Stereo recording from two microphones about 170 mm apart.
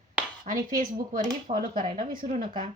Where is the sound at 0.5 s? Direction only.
45° right (ahead or behind).